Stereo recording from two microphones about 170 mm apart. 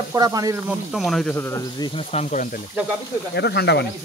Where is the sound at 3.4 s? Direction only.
85° left.